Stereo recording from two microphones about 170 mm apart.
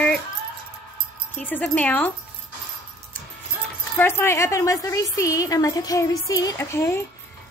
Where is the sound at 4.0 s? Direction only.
15° left (ahead or behind).